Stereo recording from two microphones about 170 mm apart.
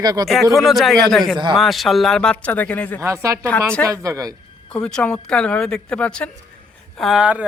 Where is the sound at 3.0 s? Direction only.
15° right (ahead or behind).